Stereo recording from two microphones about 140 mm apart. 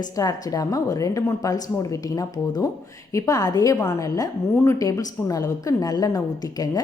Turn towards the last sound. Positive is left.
turn(degrees=25)  # may be behind; listen again after turning